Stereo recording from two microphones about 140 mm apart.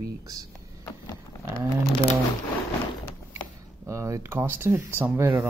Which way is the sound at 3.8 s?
20° right (ahead or behind).